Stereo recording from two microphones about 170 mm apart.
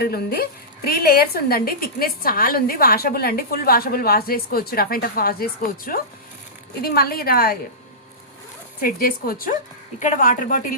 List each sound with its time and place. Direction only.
0.0 s a woman's voice: 65° left (ahead or behind)
8.8 s a woman's voice: 60° left (ahead or behind)
10.0 s a woman's voice: 50° left (ahead or behind)